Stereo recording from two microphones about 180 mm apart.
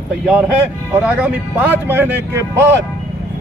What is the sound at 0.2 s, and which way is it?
A man's voice, 5° right (ahead or behind).